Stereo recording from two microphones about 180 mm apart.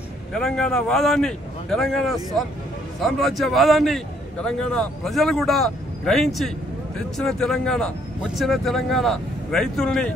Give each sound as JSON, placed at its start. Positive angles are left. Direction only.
{"t": 0.3, "sound": "a man's voice", "side_deg": 5}